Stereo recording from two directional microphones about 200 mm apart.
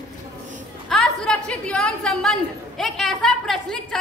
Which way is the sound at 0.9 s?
5° left (ahead or behind).